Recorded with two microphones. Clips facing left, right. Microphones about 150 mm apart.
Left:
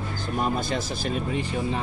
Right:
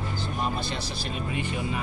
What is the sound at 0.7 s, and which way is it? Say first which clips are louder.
Speech: left 6 dB; 40° left (ahead or behind).